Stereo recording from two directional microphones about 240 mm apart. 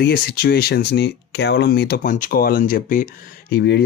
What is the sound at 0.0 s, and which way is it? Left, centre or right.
Speech, left.